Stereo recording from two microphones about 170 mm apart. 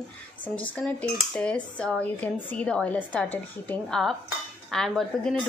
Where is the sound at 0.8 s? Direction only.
5° left (ahead or behind).